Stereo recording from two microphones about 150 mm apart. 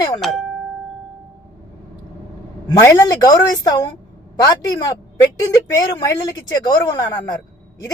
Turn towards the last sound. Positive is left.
turn(degrees=25)  # may be behind; listen again after turning